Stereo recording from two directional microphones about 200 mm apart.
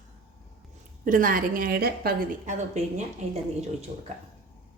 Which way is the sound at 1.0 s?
40° right (ahead or behind).